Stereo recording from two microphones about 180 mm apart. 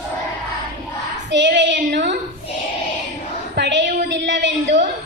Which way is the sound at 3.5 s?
75° right (ahead or behind).